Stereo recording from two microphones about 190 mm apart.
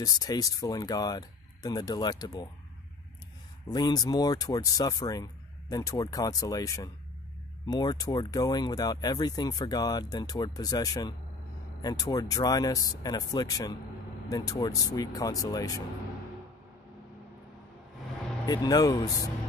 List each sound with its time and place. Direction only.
0.0 s speech: 20° left (ahead or behind)
3.6 s speech: 20° left (ahead or behind)
18.4 s speech: 20° left (ahead or behind)